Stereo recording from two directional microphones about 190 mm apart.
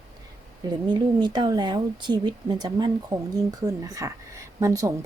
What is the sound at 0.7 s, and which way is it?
Speech, 25° right (ahead or behind).